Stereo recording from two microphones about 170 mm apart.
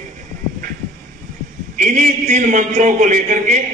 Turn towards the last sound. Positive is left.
turn(degrees=-45)  # may be behind; listen again after turning